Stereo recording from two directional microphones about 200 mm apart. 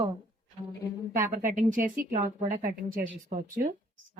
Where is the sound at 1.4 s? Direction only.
40° right (ahead or behind).